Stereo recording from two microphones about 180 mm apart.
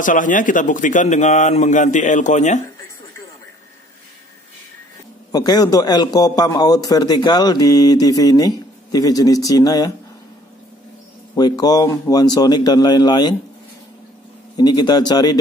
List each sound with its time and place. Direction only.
0.0 s a man's voice: 45° left (ahead or behind)
5.3 s a man's voice: 20° left (ahead or behind)
11.3 s a man's voice: 20° left (ahead or behind)
14.6 s a man's voice: 25° left (ahead or behind)